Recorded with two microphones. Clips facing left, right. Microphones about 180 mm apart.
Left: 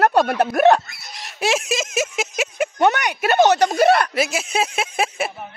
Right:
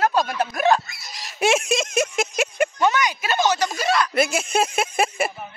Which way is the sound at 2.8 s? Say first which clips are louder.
Left 7 dB; 65° left (ahead or behind).